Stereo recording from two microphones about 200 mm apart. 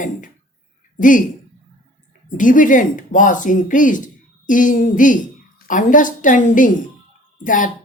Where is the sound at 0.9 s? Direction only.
40° left (ahead or behind).